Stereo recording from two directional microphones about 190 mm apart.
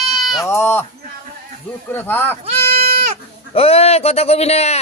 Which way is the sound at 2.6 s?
55° right (ahead or behind).